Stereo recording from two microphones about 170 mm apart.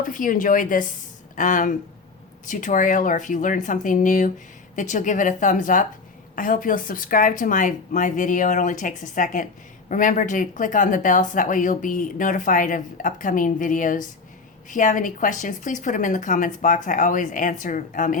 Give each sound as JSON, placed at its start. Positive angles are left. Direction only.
{"t": 0.1, "sound": "speech", "side_deg": 50}